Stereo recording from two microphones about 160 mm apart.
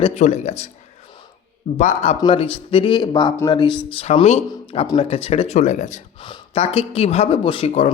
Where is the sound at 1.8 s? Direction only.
50° left (ahead or behind).